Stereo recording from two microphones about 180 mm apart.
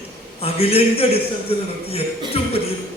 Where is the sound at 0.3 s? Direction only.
35° left (ahead or behind).